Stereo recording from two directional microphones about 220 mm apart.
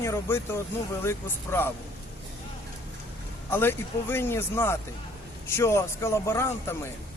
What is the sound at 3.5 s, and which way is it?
A man's voice, 10° left (ahead or behind).